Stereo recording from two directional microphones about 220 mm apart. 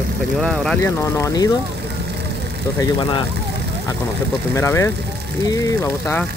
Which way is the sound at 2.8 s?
20° left (ahead or behind).